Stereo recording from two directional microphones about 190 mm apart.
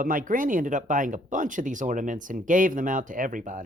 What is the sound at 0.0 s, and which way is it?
Speech, 45° right (ahead or behind).